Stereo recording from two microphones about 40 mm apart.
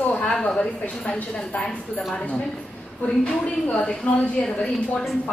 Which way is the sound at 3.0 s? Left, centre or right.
Left.